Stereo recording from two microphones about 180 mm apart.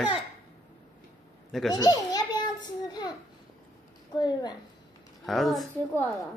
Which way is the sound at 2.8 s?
25° left (ahead or behind).